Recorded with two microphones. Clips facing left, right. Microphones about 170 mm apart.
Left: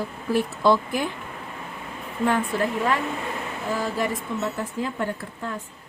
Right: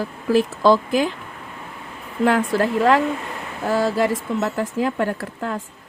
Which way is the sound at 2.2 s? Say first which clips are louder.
Right 5 dB; 90° right.